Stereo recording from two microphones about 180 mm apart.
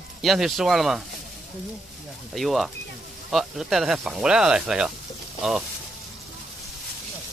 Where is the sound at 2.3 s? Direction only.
Centre (ahead or behind).